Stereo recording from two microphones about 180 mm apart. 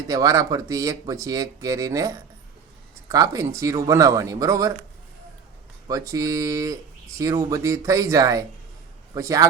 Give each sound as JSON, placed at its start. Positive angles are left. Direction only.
{"t": 0.1, "sound": "speech", "side_deg": -20}
{"t": 5.9, "sound": "speech", "side_deg": -20}